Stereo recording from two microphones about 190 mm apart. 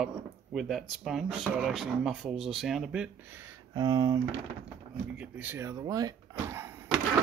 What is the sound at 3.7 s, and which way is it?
Speech, 20° right (ahead or behind).